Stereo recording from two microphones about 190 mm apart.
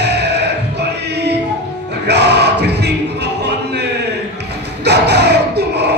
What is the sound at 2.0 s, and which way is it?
Music, 60° right (ahead or behind).